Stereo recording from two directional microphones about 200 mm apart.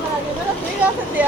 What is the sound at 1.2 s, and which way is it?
Speech, 5° right (ahead or behind).